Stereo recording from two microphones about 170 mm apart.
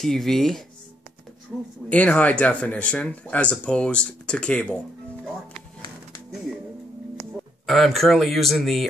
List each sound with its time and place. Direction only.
0.0 s speech: centre (ahead or behind)
1.9 s speech: 5° left (ahead or behind)
7.6 s speech: centre (ahead or behind)